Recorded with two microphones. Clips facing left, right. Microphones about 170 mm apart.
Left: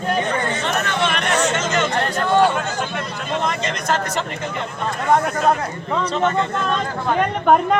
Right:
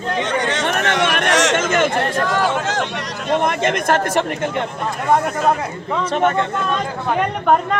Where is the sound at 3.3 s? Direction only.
55° right (ahead or behind).